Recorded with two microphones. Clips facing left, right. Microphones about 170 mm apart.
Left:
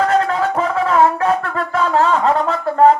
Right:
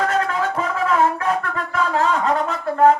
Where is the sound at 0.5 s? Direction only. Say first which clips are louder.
Left 4 dB; 35° left (ahead or behind).